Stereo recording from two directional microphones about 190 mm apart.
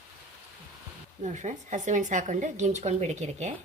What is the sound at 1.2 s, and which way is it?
A woman's voice, 40° right (ahead or behind).